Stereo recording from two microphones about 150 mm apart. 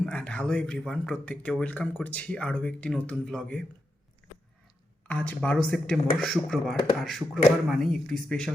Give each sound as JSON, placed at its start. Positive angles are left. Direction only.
{"t": 0.0, "sound": "speech", "side_deg": 5}
{"t": 5.0, "sound": "speech", "side_deg": 10}